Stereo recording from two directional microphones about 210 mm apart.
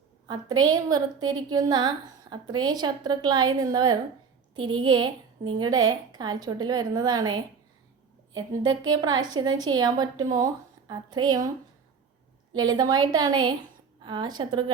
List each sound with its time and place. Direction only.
0.3 s a woman's voice: 20° right (ahead or behind)
8.3 s a woman's voice: 70° right (ahead or behind)
8.9 s a woman's voice: 20° right (ahead or behind)
12.5 s a woman's voice: 20° right (ahead or behind)